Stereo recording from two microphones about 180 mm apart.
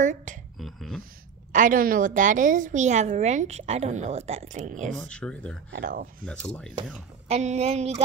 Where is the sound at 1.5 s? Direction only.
50° right (ahead or behind).